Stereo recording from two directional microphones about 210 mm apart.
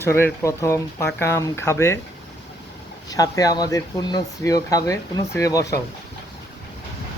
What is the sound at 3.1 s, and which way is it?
Speech, 15° left (ahead or behind).